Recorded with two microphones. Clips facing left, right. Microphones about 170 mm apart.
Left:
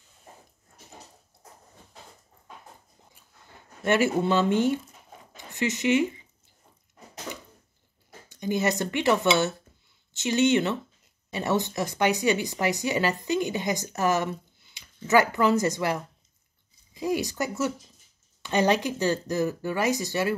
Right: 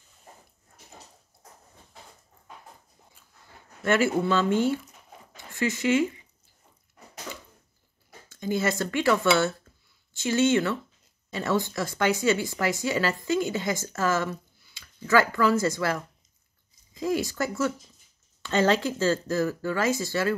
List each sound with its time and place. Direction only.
3.8 s speech: 20° left (ahead or behind)
5.3 s zipper: 20° left (ahead or behind)
8.3 s speech: 20° left (ahead or behind)